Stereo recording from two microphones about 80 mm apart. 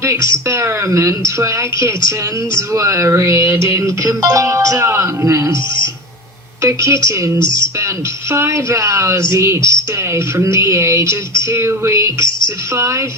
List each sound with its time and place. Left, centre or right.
0.0 s music: right
8.3 s music: right